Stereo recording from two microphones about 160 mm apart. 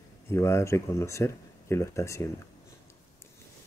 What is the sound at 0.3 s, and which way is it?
Speech, 15° left (ahead or behind).